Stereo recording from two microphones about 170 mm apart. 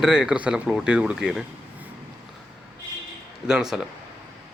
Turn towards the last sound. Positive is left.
turn(degrees=-5)  # may be behind; listen again after turning